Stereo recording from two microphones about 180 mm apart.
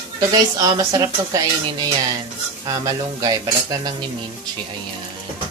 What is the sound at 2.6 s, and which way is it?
Stir, 20° right (ahead or behind).